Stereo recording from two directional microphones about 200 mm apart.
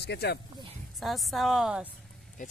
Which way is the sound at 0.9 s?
Centre (ahead or behind).